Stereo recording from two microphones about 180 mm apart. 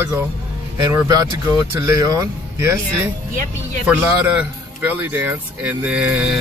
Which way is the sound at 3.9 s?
10° right (ahead or behind).